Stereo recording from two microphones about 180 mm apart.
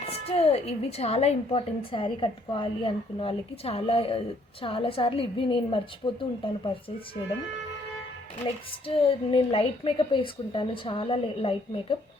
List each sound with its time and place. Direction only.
0.0 s a woman's voice: 35° left (ahead or behind)
8.4 s a woman's voice: 30° left (ahead or behind)